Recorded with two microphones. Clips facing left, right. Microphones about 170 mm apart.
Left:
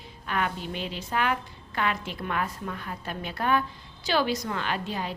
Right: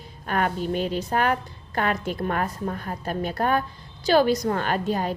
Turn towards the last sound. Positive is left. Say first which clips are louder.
# right 6 dB
turn(degrees=-45)  # may be behind; listen again after turning